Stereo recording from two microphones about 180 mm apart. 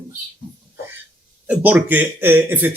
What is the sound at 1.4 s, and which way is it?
Speech, 10° right (ahead or behind).